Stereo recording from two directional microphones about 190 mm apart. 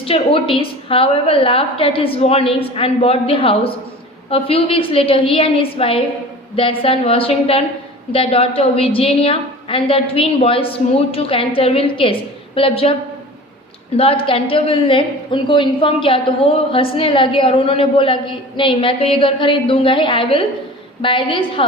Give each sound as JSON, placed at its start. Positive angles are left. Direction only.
{"t": 0.0, "sound": "a woman's voice", "side_deg": 30}